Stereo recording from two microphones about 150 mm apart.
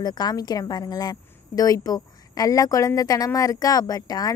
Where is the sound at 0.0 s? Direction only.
25° left (ahead or behind).